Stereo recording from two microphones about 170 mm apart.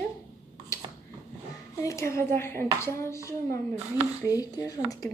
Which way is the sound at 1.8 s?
15° left (ahead or behind).